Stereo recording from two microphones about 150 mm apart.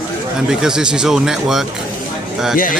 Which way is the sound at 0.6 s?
5° right (ahead or behind).